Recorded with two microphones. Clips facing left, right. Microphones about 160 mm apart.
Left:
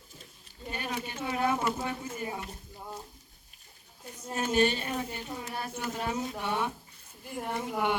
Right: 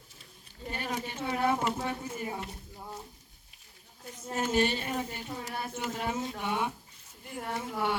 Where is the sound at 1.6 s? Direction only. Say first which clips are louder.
Even; 25° right (ahead or behind).